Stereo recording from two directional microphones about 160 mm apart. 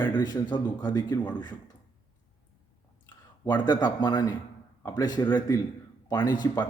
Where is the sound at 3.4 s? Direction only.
30° left (ahead or behind).